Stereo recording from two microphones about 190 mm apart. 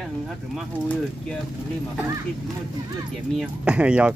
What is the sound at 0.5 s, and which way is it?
Speech, 5° left (ahead or behind).